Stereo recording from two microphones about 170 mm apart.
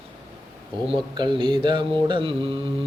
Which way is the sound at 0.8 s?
25° right (ahead or behind).